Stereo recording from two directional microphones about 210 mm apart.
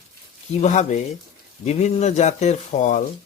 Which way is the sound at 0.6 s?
35° left (ahead or behind).